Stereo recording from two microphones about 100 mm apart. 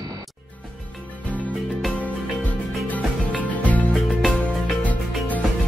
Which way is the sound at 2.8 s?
15° left (ahead or behind).